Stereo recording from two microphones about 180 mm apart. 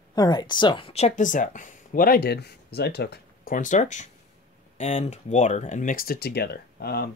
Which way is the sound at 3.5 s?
45° left (ahead or behind).